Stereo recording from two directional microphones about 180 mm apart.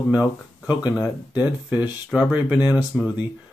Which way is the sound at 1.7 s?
5° right (ahead or behind).